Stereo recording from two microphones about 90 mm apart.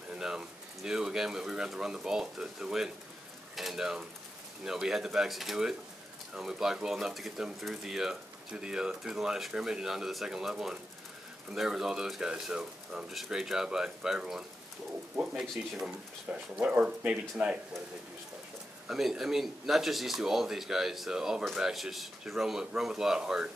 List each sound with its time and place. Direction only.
0.1 s speech: 10° right (ahead or behind)
15.6 s speech: 15° right (ahead or behind)
18.9 s speech: 5° right (ahead or behind)